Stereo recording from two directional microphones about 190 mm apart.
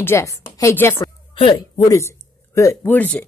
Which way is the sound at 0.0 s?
15° left (ahead or behind).